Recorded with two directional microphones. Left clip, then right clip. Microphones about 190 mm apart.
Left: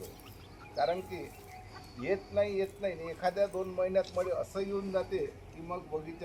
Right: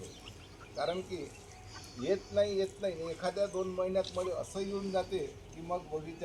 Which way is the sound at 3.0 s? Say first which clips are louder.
Left 3 dB; 65° right (ahead or behind).